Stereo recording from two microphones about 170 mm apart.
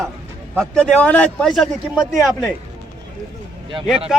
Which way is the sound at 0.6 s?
5° left (ahead or behind).